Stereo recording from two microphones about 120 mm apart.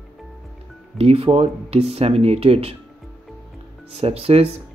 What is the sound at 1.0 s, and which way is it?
Speech, 55° right (ahead or behind).